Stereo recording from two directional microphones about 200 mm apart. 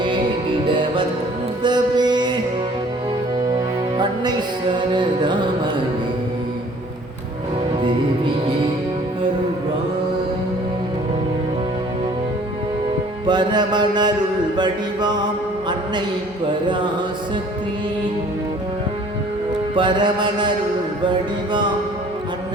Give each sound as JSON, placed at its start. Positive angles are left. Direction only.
{"t": 0.7, "sound": "music", "side_deg": -25}
{"t": 3.9, "sound": "music", "side_deg": -20}
{"t": 4.9, "sound": "mantra", "side_deg": -20}
{"t": 7.9, "sound": "music", "side_deg": -25}
{"t": 13.2, "sound": "mantra", "side_deg": -20}
{"t": 19.7, "sound": "mantra", "side_deg": -25}